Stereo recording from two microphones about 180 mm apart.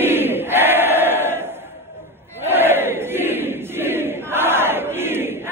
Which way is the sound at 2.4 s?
10° right (ahead or behind).